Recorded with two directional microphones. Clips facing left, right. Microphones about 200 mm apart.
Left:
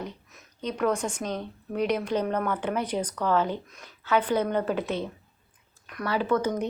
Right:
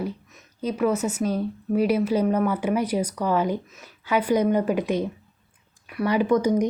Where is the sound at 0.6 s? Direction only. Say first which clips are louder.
Right 4 dB; 5° right (ahead or behind).